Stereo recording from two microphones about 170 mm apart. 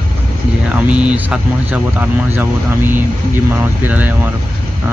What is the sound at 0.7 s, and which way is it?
Speech, 5° right (ahead or behind).